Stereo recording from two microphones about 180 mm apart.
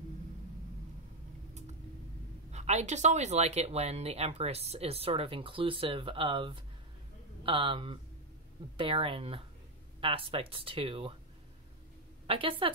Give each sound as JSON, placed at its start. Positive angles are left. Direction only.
{"t": 2.5, "sound": "speech", "side_deg": -40}
{"t": 12.3, "sound": "speech", "side_deg": -30}